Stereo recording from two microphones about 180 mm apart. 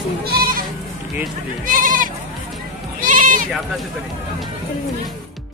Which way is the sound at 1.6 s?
50° right (ahead or behind).